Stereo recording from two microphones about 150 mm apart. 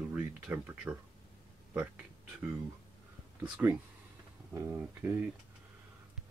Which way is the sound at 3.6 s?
15° right (ahead or behind).